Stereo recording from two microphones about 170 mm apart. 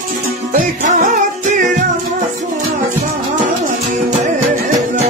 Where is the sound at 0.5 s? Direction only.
50° right (ahead or behind).